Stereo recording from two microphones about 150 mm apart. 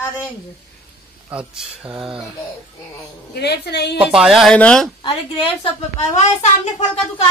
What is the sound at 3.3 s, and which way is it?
Speech, 90° left.